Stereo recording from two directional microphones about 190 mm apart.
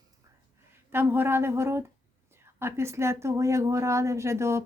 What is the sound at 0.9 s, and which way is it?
Speech, 10° right (ahead or behind).